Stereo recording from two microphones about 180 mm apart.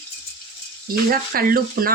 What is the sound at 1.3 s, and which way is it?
Speech, 55° right (ahead or behind).